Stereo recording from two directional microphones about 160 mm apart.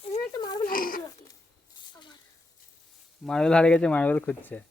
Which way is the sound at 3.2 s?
5° left (ahead or behind).